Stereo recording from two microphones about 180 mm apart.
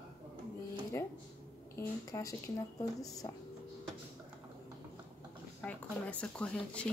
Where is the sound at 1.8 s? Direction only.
15° left (ahead or behind).